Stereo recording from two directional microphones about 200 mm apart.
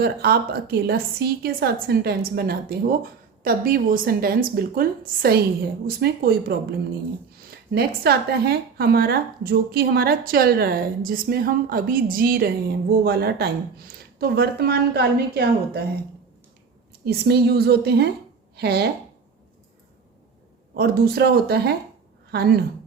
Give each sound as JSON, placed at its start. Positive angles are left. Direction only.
{"t": 0.0, "sound": "speech", "side_deg": -50}
{"t": 7.7, "sound": "speech", "side_deg": -50}
{"t": 17.1, "sound": "speech", "side_deg": -50}
{"t": 20.7, "sound": "a woman's voice", "side_deg": -50}